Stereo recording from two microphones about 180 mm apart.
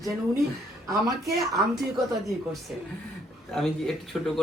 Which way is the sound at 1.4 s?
Centre (ahead or behind).